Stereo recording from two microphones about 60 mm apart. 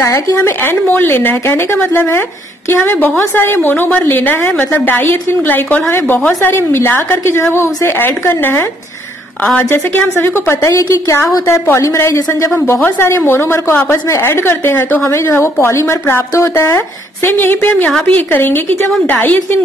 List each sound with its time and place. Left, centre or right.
0.4 s a woman's voice: left
13.8 s a woman's voice: left
14.3 s a woman's voice: left
15.0 s a woman's voice: left
15.6 s a woman's voice: left